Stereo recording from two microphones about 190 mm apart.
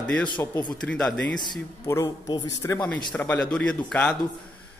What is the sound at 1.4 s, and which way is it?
Speech, 20° left (ahead or behind).